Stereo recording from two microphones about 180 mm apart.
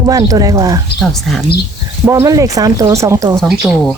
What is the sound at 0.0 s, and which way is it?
Speech, 20° right (ahead or behind).